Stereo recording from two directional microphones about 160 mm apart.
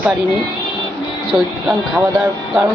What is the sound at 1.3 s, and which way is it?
Speech, centre (ahead or behind).